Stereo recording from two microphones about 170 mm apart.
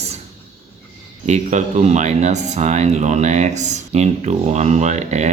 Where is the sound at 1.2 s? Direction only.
45° right (ahead or behind).